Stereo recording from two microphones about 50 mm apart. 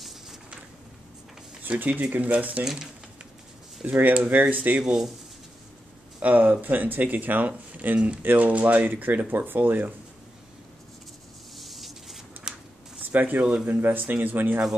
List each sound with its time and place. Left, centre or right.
1.6 s a sound: right
1.9 s speech: right
2.6 s speech: centre
3.8 s speech: right
6.1 s speech: right
11.5 s a sound: centre
13.0 s speech: right